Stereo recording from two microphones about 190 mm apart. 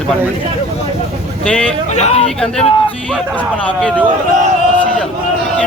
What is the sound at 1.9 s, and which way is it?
Speech, 35° left (ahead or behind).